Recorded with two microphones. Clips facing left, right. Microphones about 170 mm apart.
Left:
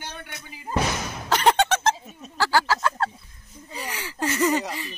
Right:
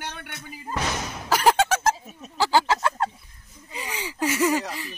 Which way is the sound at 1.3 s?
5° right (ahead or behind).